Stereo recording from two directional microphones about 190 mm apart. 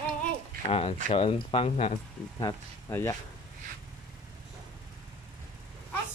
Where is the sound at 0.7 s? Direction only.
30° left (ahead or behind).